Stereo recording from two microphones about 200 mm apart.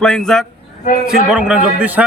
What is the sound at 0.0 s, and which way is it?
A man's voice, 5° left (ahead or behind).